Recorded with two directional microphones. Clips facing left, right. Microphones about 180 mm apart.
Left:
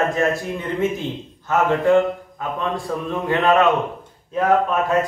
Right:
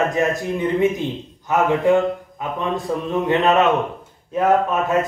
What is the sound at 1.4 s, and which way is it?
A man's voice, 15° right (ahead or behind).